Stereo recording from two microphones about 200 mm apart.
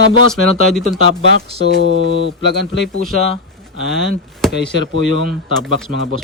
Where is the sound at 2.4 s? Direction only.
55° left (ahead or behind).